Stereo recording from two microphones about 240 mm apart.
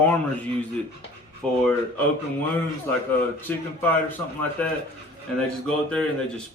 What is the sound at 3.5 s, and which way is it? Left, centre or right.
Speech, centre.